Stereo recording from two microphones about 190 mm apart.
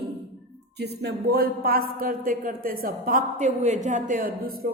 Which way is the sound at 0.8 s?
60° right (ahead or behind).